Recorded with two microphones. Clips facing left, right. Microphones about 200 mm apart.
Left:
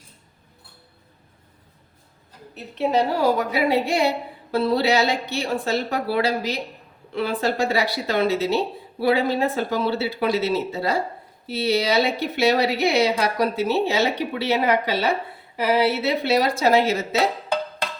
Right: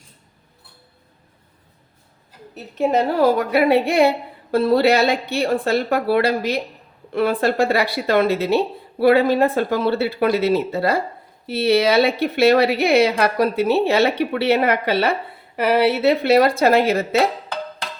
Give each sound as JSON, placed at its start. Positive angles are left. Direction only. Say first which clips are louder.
{"t": 2.7, "sound": "speech", "louder": "right 3 dB", "side_deg": -50}